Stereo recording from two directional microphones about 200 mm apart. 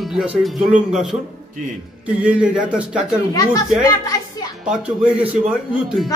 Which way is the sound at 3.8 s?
15° left (ahead or behind).